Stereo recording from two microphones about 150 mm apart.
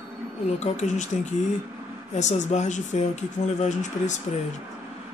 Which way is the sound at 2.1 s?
50° left (ahead or behind).